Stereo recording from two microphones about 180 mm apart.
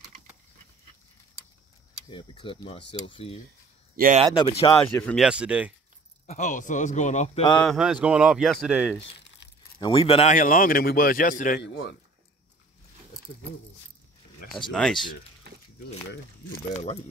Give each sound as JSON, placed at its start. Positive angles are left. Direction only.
{"t": 2.0, "sound": "speech", "side_deg": 30}
{"t": 3.9, "sound": "speech", "side_deg": -50}
{"t": 4.4, "sound": "speech", "side_deg": 30}
{"t": 4.9, "sound": "speech", "side_deg": 5}
{"t": 6.2, "sound": "speech", "side_deg": 45}
{"t": 7.6, "sound": "speech", "side_deg": 0}
{"t": 9.8, "sound": "speech", "side_deg": 30}
{"t": 10.3, "sound": "speech", "side_deg": 50}
{"t": 11.6, "sound": "speech", "side_deg": 75}
{"t": 14.7, "sound": "speech", "side_deg": 5}
{"t": 15.5, "sound": "a sound", "side_deg": -65}